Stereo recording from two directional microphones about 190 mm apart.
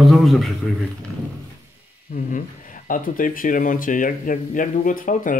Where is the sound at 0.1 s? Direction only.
Centre (ahead or behind).